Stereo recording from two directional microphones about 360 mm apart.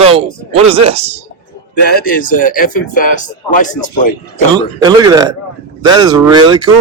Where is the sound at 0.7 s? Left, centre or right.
Centre.